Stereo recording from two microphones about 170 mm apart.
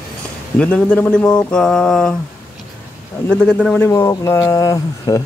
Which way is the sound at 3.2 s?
5° left (ahead or behind).